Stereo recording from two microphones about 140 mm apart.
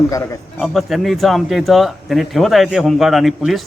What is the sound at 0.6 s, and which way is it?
A man's voice, centre (ahead or behind).